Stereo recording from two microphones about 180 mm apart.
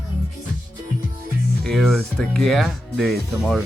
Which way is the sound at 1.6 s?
Centre (ahead or behind).